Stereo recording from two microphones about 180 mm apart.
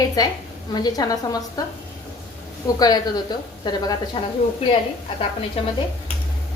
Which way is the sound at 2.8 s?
20° left (ahead or behind).